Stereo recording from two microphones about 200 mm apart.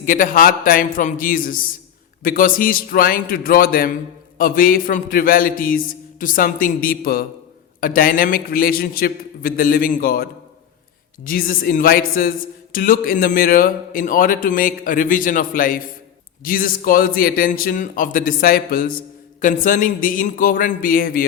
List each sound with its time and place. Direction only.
0.0 s a man's voice: 40° left (ahead or behind)